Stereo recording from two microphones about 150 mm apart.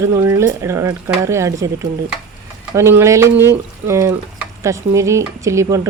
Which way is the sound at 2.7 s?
15° right (ahead or behind).